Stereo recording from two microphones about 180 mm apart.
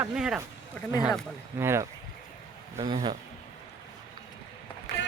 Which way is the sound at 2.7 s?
35° right (ahead or behind).